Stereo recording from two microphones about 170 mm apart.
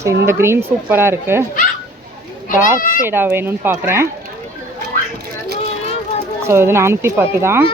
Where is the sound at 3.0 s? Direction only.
15° right (ahead or behind).